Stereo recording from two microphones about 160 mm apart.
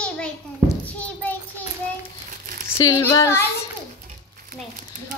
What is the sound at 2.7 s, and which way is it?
Speech, 20° left (ahead or behind).